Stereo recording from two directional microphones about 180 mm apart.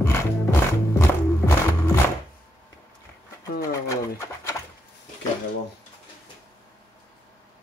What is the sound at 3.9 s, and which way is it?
Bird, 15° left (ahead or behind).